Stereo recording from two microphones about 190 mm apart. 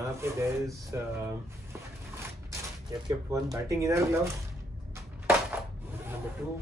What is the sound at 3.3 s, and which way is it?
Speech, 15° right (ahead or behind).